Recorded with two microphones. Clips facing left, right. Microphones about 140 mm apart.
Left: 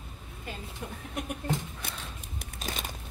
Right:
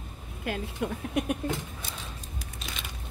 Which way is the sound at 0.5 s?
85° right.